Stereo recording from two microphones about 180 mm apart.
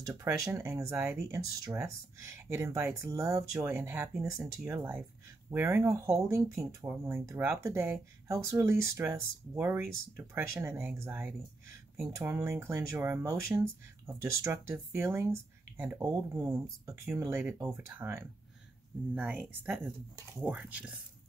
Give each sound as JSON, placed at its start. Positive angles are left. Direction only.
{"t": 0.0, "sound": "speech", "side_deg": -15}